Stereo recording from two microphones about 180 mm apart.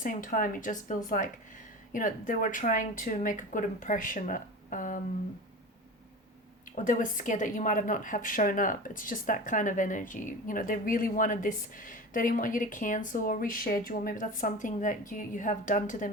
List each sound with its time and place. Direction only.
0.0 s a woman's voice: 50° left (ahead or behind)
6.7 s a woman's voice: 45° left (ahead or behind)